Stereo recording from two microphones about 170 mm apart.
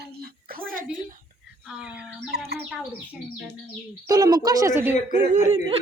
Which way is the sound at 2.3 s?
70° right (ahead or behind).